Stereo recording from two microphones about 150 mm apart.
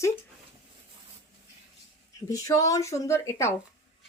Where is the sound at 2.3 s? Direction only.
20° left (ahead or behind).